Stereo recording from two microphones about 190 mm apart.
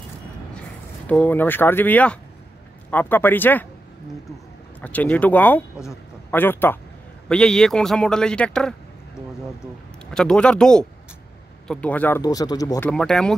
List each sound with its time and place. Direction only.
1.0 s speech: 5° left (ahead or behind)
4.8 s a man's voice: 10° left (ahead or behind)
10.1 s a man's voice: 5° left (ahead or behind)
12.2 s speech: 20° left (ahead or behind)
12.9 s a man's voice: 5° left (ahead or behind)